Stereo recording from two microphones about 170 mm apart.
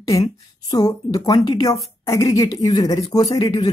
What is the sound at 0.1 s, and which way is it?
Speech, 20° left (ahead or behind).